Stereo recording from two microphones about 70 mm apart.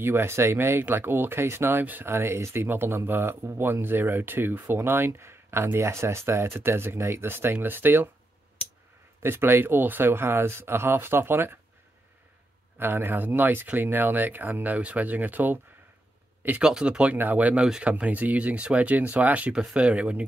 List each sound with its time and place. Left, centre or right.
0.0 s speech: right
9.2 s speech: right
12.7 s speech: right
16.6 s speech: centre